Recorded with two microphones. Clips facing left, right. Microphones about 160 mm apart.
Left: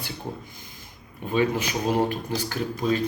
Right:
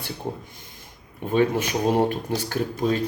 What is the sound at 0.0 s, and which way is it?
Speech, 60° right (ahead or behind).